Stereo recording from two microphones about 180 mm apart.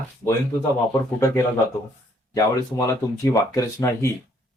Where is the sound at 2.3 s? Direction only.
20° left (ahead or behind).